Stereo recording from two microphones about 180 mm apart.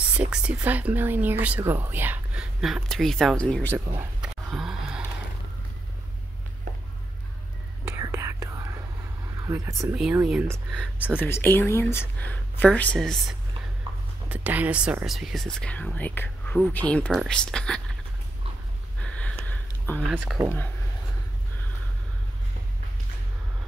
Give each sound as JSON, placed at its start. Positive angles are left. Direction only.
{"t": 0.1, "sound": "speech", "side_deg": -5}
{"t": 4.2, "sound": "a sound", "side_deg": -5}
{"t": 7.8, "sound": "whispering", "side_deg": -15}
{"t": 9.4, "sound": "speech", "side_deg": -15}
{"t": 9.9, "sound": "speech", "side_deg": -5}
{"t": 10.7, "sound": "speech", "side_deg": 5}
{"t": 14.3, "sound": "speech", "side_deg": -10}
{"t": 19.0, "sound": "a sound", "side_deg": 5}
{"t": 20.1, "sound": "speech", "side_deg": -5}